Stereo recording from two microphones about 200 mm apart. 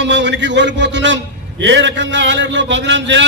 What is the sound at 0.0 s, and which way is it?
A man's voice, 60° right (ahead or behind).